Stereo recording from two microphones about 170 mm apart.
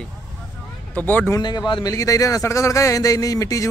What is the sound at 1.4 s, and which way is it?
Speech, 25° left (ahead or behind).